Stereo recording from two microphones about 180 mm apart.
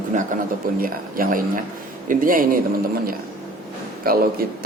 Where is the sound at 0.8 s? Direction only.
50° right (ahead or behind).